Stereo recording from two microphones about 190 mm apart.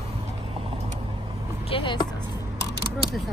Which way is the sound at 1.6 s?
25° left (ahead or behind).